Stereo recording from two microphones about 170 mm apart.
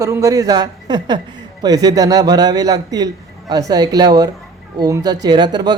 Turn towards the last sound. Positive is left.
turn(degrees=-25)  # may be behind; listen again after turning